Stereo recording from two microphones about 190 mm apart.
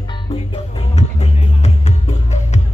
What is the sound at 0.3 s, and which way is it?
Music, 30° left (ahead or behind).